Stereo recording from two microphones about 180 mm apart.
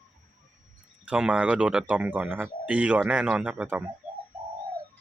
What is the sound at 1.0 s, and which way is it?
Speech, 5° right (ahead or behind).